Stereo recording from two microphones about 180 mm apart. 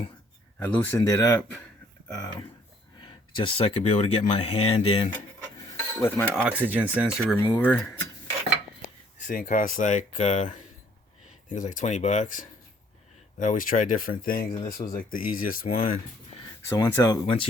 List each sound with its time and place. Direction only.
0.6 s speech: 10° left (ahead or behind); by 5.1 s 30° left (ahead or behind)
5.5 s cutlery: 15° left (ahead or behind)
6.4 s speech: 10° right (ahead or behind)
7.5 s speech: 10° left (ahead or behind)
9.2 s speech: 45° left (ahead or behind)
11.5 s speech: 45° left (ahead or behind)
16.6 s speech: 20° left (ahead or behind)